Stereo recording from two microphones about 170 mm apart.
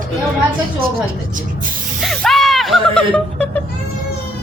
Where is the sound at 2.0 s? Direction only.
Centre (ahead or behind).